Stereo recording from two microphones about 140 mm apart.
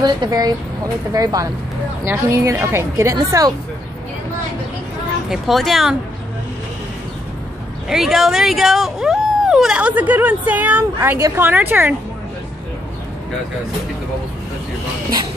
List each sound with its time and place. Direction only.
0.0 s a woman's voice: 30° right (ahead or behind)
5.3 s speech: centre (ahead or behind)
7.9 s speech: centre (ahead or behind)